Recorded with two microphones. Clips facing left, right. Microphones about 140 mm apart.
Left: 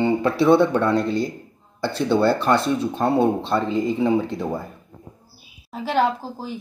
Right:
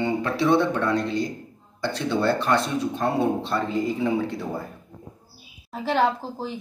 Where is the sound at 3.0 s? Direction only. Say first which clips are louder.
Left 4 dB; 25° left (ahead or behind).